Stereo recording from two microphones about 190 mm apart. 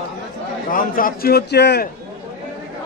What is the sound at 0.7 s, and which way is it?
A man's voice, 45° left (ahead or behind).